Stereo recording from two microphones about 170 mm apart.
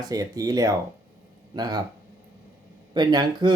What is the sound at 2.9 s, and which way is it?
Speech, 25° right (ahead or behind).